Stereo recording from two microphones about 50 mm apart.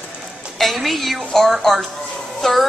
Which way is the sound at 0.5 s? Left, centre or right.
Centre.